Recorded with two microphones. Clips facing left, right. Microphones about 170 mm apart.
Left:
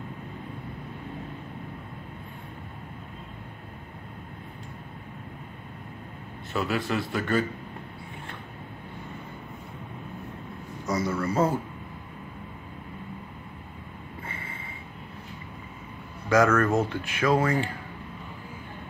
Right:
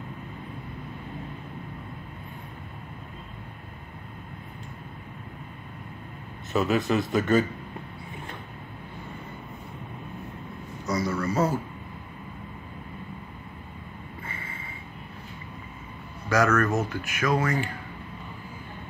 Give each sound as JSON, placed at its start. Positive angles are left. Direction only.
{"t": 6.5, "sound": "a man's voice", "side_deg": -20}
{"t": 11.1, "sound": "speech", "side_deg": 25}
{"t": 14.2, "sound": "a sound", "side_deg": 30}
{"t": 16.3, "sound": "speech", "side_deg": 25}